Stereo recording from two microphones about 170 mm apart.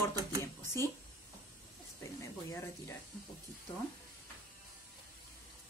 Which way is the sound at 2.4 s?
15° left (ahead or behind).